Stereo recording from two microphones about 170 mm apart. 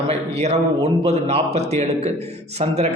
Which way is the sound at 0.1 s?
40° right (ahead or behind).